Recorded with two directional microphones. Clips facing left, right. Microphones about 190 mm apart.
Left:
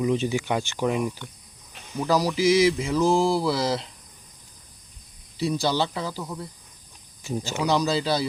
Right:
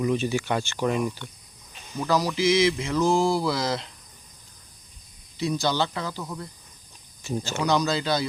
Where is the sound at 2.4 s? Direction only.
35° left (ahead or behind).